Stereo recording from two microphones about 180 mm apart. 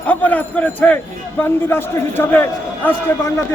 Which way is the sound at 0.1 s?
10° left (ahead or behind).